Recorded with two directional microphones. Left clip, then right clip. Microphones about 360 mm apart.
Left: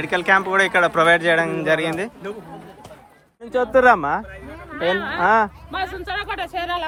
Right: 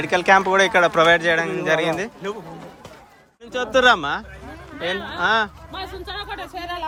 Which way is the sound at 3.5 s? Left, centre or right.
Centre.